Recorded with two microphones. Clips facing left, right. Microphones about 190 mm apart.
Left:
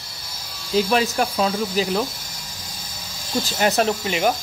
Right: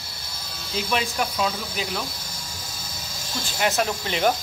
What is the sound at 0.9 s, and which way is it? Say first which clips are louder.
Speech: left 5 dB; 45° left (ahead or behind).